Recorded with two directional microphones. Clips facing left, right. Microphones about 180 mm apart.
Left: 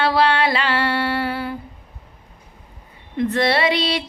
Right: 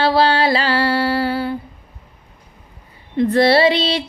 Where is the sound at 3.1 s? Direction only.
30° right (ahead or behind).